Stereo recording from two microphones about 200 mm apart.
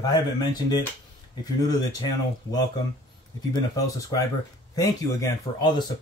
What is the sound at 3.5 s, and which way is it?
Speech, 15° left (ahead or behind).